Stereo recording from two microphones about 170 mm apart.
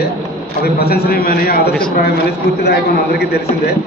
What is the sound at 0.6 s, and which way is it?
A man's voice, 65° left (ahead or behind).